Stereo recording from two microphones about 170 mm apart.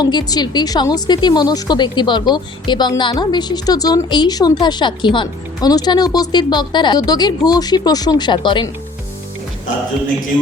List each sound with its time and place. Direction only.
0.0 s a woman's voice: 25° left (ahead or behind)